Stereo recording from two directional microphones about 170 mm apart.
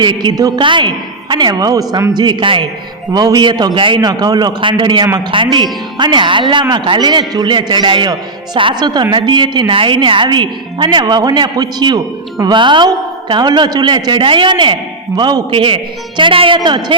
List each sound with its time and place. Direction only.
0.0 s a man's voice: 25° right (ahead or behind)